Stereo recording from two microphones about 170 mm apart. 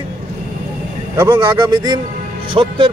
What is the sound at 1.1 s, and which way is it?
Speech, 15° right (ahead or behind).